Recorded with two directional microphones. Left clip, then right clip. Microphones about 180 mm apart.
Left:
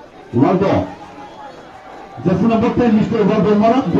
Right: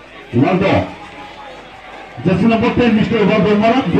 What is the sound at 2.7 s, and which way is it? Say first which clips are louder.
Speech: right 1 dB; 10° right (ahead or behind).